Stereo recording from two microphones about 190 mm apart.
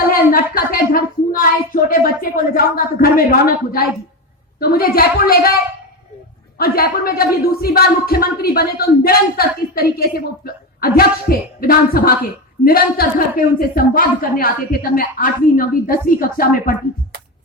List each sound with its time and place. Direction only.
0.1 s a woman's voice: 50° left (ahead or behind)
6.6 s speech: 50° left (ahead or behind)